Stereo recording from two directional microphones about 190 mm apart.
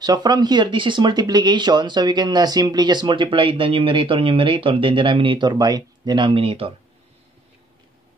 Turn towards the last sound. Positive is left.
turn(degrees=-30)  # may be behind; listen again after turning